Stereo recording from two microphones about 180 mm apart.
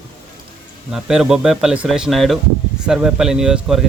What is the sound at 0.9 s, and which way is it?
Speech, 5° right (ahead or behind).